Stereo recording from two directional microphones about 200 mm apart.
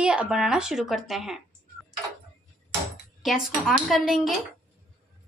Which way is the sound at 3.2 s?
Centre (ahead or behind).